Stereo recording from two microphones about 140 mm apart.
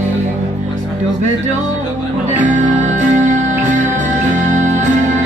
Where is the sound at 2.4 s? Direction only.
60° right (ahead or behind).